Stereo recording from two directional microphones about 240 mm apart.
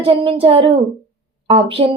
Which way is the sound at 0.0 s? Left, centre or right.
Right.